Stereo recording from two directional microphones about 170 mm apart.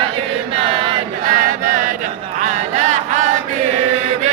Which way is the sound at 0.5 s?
30° right (ahead or behind).